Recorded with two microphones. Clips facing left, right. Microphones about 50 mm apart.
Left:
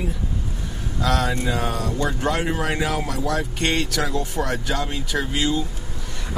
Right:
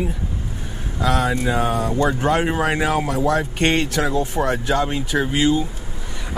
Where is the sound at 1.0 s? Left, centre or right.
Centre.